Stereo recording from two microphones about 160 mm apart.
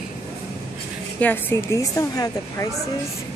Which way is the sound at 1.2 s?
15° left (ahead or behind).